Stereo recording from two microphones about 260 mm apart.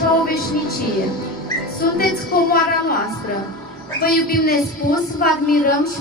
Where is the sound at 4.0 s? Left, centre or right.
Left.